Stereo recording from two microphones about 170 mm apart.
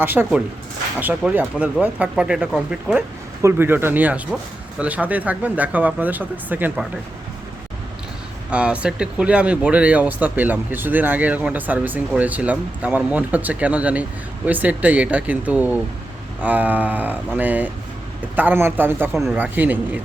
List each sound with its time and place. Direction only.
0.0 s speech: 10° right (ahead or behind)
8.4 s speech: 5° right (ahead or behind)
19.1 s speech: centre (ahead or behind)
19.4 s speech: 10° right (ahead or behind)